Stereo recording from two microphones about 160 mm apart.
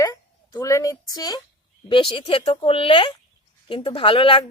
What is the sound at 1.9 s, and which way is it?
A woman's voice, 35° left (ahead or behind).